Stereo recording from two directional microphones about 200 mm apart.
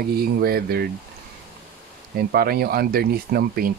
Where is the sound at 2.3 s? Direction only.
50° right (ahead or behind).